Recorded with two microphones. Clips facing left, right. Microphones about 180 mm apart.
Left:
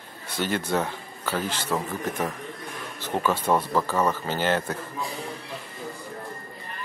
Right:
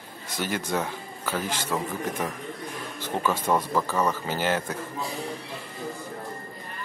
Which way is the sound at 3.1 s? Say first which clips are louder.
Left 1 dB; 10° left (ahead or behind).